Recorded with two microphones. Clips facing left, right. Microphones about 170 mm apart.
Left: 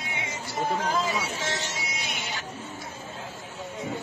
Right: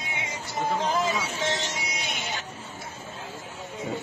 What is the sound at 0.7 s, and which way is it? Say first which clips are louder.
Speech: right 2 dB; 20° right (ahead or behind).